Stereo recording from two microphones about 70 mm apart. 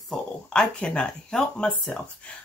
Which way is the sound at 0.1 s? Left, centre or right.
Centre.